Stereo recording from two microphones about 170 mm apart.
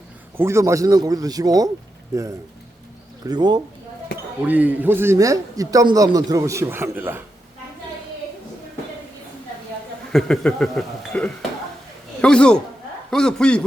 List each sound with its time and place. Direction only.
0.3 s speech: 15° right (ahead or behind)
3.2 s speech: 25° right (ahead or behind)
4.4 s a man's voice: 10° right (ahead or behind)
10.1 s a man's voice: 5° left (ahead or behind)